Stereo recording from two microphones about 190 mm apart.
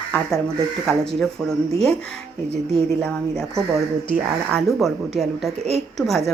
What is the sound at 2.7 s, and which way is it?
Speech, centre (ahead or behind).